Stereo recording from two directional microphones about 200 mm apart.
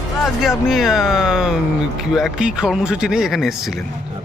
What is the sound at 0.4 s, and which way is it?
Speech, centre (ahead or behind).